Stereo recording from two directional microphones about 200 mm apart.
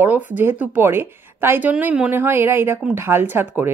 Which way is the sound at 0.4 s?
10° right (ahead or behind).